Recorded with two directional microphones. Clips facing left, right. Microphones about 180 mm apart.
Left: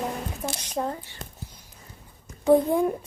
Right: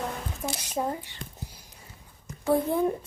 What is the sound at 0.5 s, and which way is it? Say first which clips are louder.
Speech: right 1 dB; 10° right (ahead or behind).